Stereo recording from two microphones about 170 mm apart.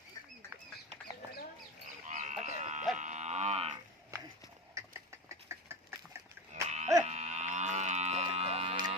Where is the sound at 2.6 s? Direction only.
45° right (ahead or behind).